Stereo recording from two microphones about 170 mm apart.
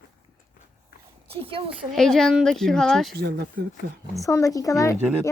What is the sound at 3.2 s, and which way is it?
Speech, 70° right (ahead or behind).